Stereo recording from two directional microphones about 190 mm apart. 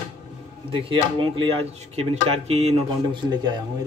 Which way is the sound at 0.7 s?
25° right (ahead or behind).